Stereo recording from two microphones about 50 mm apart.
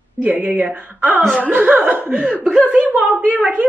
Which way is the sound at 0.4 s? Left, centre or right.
Right.